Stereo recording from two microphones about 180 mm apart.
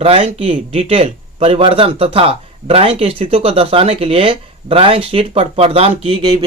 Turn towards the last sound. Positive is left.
turn(degrees=-30)  # may be behind; listen again after turning